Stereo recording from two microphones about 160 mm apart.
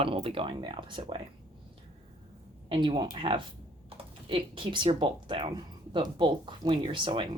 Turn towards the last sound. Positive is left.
turn(degrees=-30)  # may be behind; listen again after turning